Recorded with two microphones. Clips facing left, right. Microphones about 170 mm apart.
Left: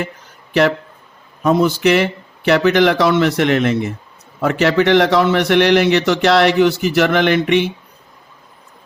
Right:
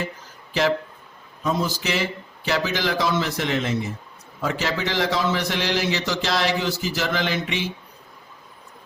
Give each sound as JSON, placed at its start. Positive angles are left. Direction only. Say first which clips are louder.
{"t": 1.4, "sound": "a man's voice", "louder": "left 10 dB", "side_deg": 65}